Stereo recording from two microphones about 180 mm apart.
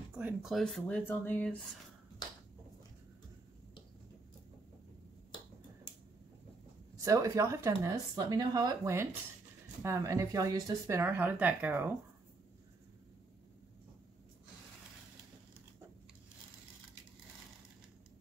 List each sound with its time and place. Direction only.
0.1 s speech: 5° right (ahead or behind)
7.0 s speech: 20° right (ahead or behind)